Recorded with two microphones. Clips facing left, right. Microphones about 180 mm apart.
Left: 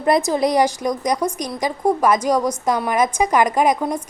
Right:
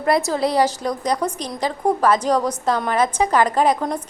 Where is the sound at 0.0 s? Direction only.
20° left (ahead or behind).